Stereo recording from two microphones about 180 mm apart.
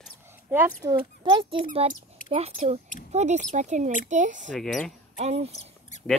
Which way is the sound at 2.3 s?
35° right (ahead or behind).